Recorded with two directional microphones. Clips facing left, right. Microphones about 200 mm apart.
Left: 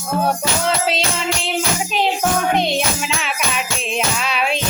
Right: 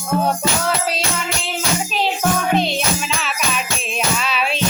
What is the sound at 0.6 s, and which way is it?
Music, 25° left (ahead or behind).